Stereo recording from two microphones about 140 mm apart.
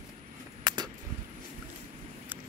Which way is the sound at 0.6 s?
30° right (ahead or behind).